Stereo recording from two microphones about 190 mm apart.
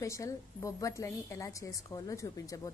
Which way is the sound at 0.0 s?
15° left (ahead or behind).